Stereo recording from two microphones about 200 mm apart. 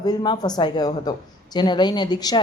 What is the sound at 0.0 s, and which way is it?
A woman's voice, 20° left (ahead or behind).